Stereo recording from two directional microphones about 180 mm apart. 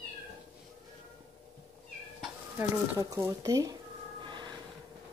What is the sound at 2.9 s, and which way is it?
Speech, 20° right (ahead or behind).